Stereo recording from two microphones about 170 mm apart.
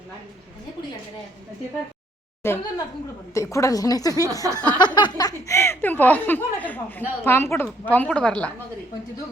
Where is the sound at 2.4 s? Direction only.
15° left (ahead or behind).